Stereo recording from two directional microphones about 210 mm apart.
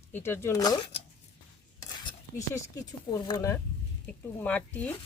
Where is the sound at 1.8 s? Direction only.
15° left (ahead or behind).